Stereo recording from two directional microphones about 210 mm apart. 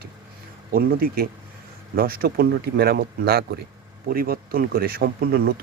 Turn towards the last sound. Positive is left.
turn(degrees=-45)  # may be behind; listen again after turning